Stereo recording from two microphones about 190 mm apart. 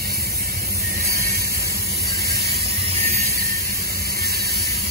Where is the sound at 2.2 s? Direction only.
55° right (ahead or behind).